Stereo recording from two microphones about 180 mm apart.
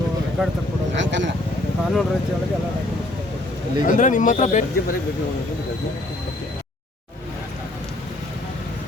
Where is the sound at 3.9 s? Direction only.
45° left (ahead or behind).